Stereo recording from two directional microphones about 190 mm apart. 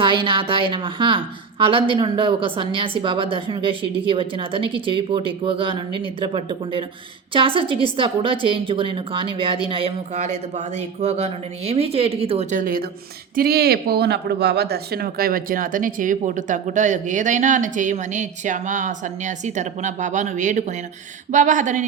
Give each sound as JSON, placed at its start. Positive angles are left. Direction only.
{"t": 0.0, "sound": "a woman's voice", "side_deg": -25}